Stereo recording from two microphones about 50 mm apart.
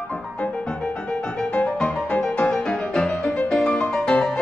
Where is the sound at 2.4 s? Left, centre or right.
Centre.